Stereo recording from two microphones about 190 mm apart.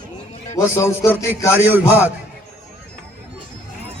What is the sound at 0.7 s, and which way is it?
Speech, 15° left (ahead or behind).